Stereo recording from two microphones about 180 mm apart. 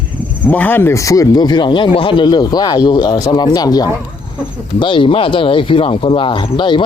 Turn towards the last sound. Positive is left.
turn(degrees=25)  # may be behind; listen again after turning